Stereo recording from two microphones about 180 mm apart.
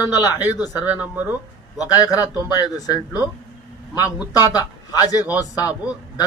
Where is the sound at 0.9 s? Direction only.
10° right (ahead or behind).